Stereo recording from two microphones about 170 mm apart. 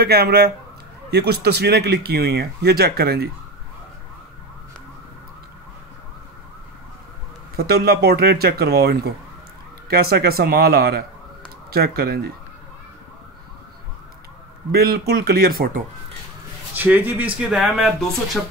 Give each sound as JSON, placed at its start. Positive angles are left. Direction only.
{"t": 0.0, "sound": "speech", "side_deg": -70}
{"t": 7.5, "sound": "speech", "side_deg": -65}
{"t": 14.7, "sound": "speech", "side_deg": -65}
{"t": 16.7, "sound": "speech", "side_deg": -10}